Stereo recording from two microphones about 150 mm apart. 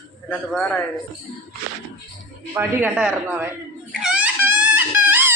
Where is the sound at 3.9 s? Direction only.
5° right (ahead or behind).